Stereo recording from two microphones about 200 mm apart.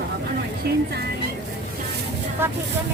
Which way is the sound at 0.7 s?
50° right (ahead or behind).